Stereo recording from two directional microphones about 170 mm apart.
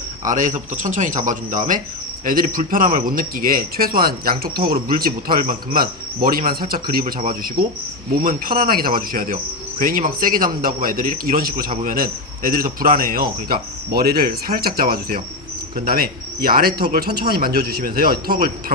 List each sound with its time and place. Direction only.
0.3 s speech: 50° right (ahead or behind)
7.0 s speech: 40° right (ahead or behind)
8.2 s speech: 55° right (ahead or behind)